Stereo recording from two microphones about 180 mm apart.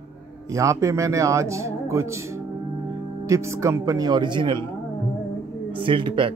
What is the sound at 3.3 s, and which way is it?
Speech, 15° right (ahead or behind).